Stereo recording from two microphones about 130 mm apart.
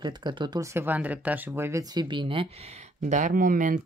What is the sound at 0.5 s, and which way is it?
Speech, 20° right (ahead or behind).